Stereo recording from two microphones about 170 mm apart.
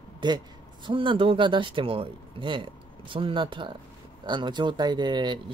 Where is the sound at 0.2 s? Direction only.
25° right (ahead or behind).